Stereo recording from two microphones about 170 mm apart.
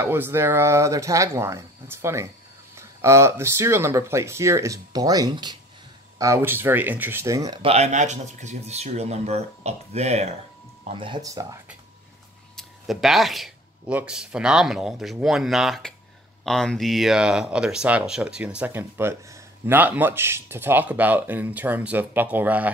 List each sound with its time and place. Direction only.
0.0 s speech: 15° right (ahead or behind)
7.6 s speech: 40° right (ahead or behind)
12.5 s speech: centre (ahead or behind)